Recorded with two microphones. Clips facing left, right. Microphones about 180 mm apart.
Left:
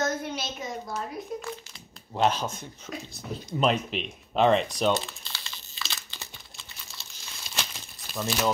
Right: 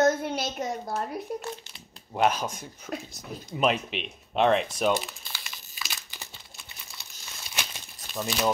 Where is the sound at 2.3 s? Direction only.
10° right (ahead or behind).